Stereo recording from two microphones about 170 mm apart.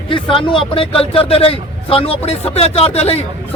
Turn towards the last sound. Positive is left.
turn(degrees=35)  # may be behind; listen again after turning